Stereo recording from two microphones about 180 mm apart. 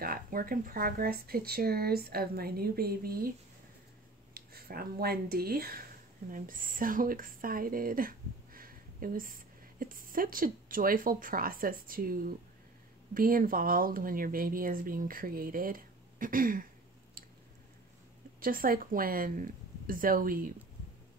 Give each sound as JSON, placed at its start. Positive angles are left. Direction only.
{"t": 0.0, "sound": "speech", "side_deg": -55}
{"t": 4.3, "sound": "speech", "side_deg": -55}
{"t": 18.4, "sound": "speech", "side_deg": -50}